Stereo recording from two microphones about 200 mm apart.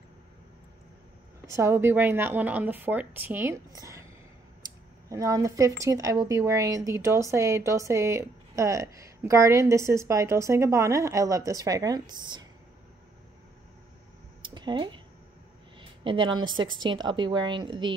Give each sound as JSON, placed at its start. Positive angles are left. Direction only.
{"t": 1.5, "sound": "speech", "side_deg": -15}
{"t": 5.1, "sound": "speech", "side_deg": -15}
{"t": 14.4, "sound": "a sound", "side_deg": -20}
{"t": 16.6, "sound": "a woman's voice", "side_deg": -25}